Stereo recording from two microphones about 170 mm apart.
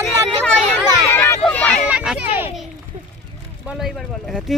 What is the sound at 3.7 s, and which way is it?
Speech, centre (ahead or behind).